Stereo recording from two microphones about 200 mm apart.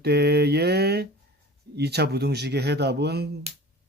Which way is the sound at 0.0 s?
55° right (ahead or behind).